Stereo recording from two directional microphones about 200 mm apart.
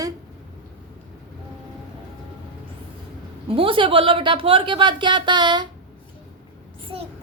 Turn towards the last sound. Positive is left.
turn(degrees=-20)  # may be behind; listen again after turning